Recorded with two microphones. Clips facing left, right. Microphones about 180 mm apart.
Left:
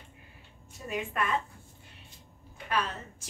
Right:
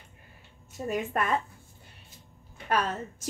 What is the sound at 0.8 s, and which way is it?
Speech, 40° right (ahead or behind).